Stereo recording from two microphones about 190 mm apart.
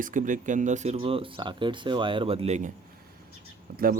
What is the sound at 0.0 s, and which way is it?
Speech, 45° right (ahead or behind).